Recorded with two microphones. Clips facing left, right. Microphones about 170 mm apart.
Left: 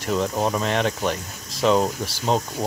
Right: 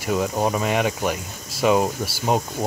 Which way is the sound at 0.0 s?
5° right (ahead or behind).